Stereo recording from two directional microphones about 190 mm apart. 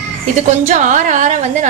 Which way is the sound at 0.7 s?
40° right (ahead or behind).